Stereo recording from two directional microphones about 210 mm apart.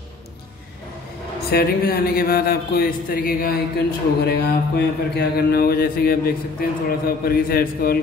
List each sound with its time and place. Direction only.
1.5 s a man's voice: 45° left (ahead or behind)